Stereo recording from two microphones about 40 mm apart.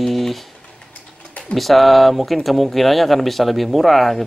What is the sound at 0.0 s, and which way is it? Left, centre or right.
Typing, centre.